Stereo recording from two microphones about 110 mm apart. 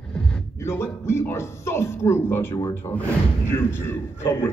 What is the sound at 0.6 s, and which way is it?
A man's voice, 25° left (ahead or behind).